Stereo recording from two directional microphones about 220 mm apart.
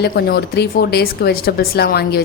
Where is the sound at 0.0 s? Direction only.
45° left (ahead or behind).